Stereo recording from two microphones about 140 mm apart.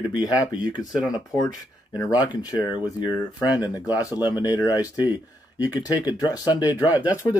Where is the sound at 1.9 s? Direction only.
25° left (ahead or behind).